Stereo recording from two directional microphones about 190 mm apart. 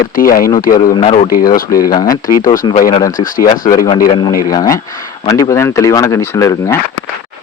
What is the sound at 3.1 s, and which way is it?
Speech, 45° left (ahead or behind).